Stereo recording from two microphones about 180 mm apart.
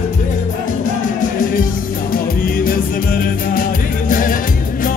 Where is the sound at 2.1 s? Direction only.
55° left (ahead or behind).